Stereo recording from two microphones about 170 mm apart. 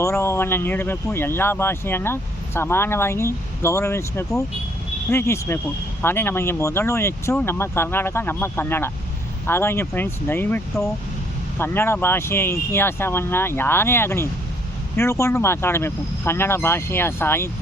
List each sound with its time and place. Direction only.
0.0 s speech: 15° left (ahead or behind)